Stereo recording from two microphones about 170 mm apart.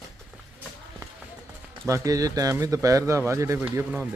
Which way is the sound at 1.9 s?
20° right (ahead or behind).